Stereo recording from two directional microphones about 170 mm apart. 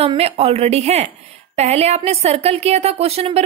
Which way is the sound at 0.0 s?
35° right (ahead or behind).